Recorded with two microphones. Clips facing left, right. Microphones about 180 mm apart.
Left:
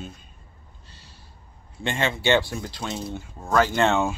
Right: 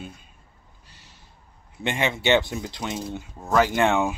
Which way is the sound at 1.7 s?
15° right (ahead or behind).